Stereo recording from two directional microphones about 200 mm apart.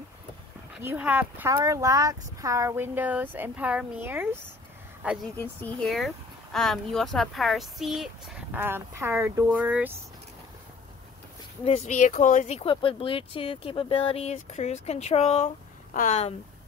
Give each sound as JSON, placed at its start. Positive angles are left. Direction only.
{"t": 0.8, "sound": "speech", "side_deg": -5}
{"t": 11.6, "sound": "speech", "side_deg": 30}